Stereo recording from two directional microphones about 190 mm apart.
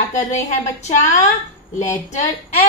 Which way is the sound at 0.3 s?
40° left (ahead or behind).